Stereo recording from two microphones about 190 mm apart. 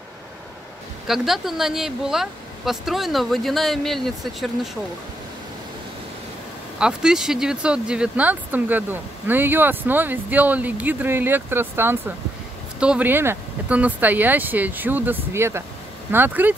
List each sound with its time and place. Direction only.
1.0 s speech: centre (ahead or behind)
6.8 s speech: 5° right (ahead or behind)